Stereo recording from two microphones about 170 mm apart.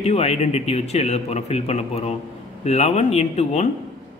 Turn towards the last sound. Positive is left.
turn(degrees=40)  # may be behind; listen again after turning